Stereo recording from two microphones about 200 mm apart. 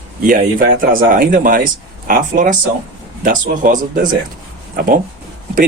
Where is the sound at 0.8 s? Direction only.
45° right (ahead or behind).